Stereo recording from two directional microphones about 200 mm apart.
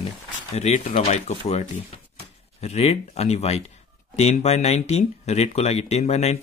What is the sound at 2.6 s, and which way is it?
Speech, 30° left (ahead or behind).